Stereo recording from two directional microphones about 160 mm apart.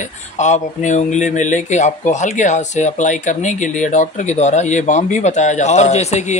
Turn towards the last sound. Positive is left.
turn(degrees=45)  # may be behind; listen again after turning